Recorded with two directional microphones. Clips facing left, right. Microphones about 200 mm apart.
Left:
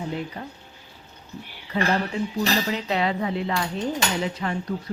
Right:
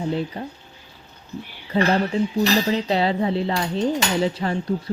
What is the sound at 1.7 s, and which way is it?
Speech, 30° right (ahead or behind).